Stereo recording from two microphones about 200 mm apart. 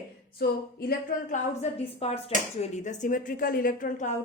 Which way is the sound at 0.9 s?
40° left (ahead or behind).